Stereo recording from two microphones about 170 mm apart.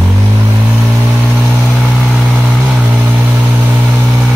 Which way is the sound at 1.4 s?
5° right (ahead or behind).